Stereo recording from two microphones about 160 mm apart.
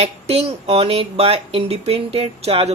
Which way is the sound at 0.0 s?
40° right (ahead or behind).